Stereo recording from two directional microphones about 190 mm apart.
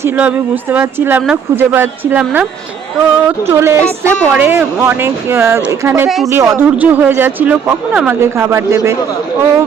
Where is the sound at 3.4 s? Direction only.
15° right (ahead or behind).